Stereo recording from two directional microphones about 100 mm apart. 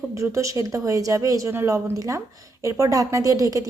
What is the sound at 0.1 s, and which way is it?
A woman's voice, 30° right (ahead or behind).